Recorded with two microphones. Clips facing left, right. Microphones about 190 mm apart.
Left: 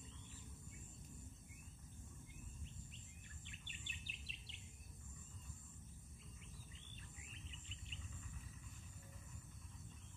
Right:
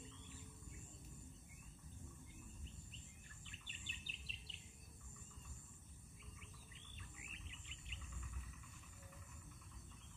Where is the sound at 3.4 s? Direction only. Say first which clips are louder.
Even; 35° right (ahead or behind).